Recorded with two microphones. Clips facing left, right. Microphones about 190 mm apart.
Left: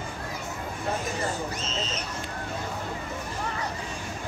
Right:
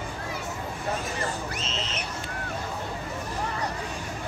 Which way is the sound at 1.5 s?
70° right (ahead or behind).